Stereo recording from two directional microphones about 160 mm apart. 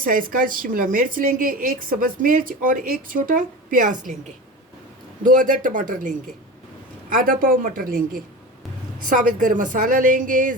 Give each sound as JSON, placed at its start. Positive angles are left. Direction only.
{"t": 0.0, "sound": "a woman's voice", "side_deg": -60}
{"t": 5.2, "sound": "a woman's voice", "side_deg": -55}